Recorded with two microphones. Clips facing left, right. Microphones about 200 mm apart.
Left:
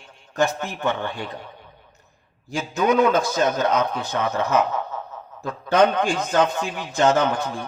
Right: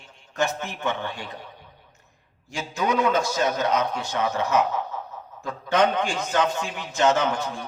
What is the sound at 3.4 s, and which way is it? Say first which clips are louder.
Speech: left 3 dB; 55° left (ahead or behind).